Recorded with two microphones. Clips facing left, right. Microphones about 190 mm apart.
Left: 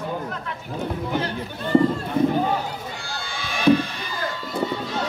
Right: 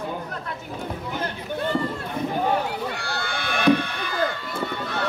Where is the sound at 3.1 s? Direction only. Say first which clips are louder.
Right 3 dB; 60° right (ahead or behind).